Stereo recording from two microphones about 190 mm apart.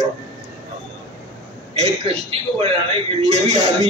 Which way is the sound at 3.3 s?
35° right (ahead or behind).